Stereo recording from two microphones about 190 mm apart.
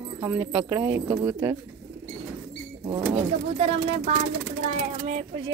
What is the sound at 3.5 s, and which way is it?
Speech, 30° right (ahead or behind).